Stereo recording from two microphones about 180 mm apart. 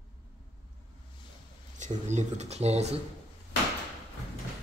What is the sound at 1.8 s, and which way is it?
Speech, 40° right (ahead or behind).